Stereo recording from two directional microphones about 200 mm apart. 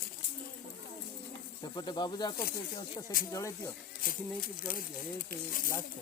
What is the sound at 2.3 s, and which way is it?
Speech, 50° left (ahead or behind).